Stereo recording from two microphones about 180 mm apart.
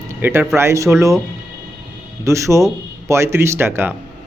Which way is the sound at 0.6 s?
15° right (ahead or behind).